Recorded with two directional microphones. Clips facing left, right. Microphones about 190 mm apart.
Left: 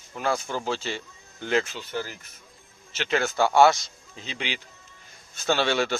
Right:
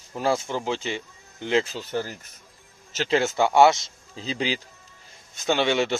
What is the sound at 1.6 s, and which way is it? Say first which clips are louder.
Speech: right 3 dB; 40° right (ahead or behind).